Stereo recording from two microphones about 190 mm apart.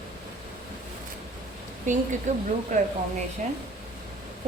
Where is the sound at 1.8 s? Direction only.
40° right (ahead or behind).